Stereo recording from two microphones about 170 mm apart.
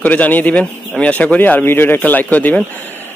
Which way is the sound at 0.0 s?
10° left (ahead or behind).